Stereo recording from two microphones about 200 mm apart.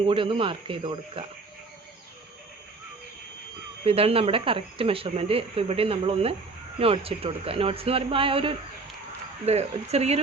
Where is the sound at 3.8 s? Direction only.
30° right (ahead or behind).